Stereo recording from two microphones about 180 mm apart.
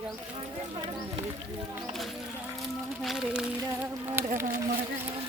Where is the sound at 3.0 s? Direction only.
Centre (ahead or behind).